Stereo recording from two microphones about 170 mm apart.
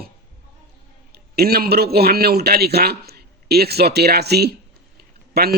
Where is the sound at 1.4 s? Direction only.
65° right (ahead or behind).